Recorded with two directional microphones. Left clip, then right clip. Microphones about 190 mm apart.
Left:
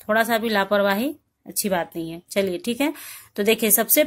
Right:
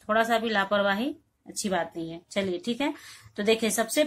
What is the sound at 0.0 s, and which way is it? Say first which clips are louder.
Speech: left 4 dB; 40° left (ahead or behind).